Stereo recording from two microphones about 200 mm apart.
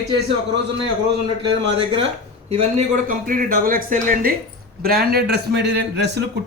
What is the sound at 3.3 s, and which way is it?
A man's voice, 45° right (ahead or behind).